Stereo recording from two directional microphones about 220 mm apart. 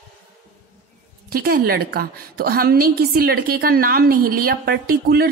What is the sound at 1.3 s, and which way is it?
A woman's voice, 45° right (ahead or behind).